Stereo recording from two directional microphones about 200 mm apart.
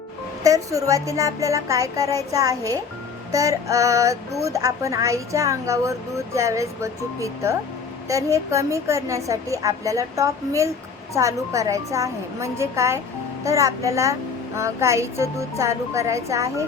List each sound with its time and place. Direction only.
0.4 s a woman's voice: 15° right (ahead or behind)